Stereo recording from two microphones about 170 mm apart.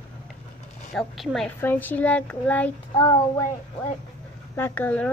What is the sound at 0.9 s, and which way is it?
Speech, centre (ahead or behind).